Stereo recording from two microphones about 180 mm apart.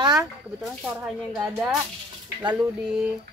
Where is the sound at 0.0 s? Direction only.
20° right (ahead or behind).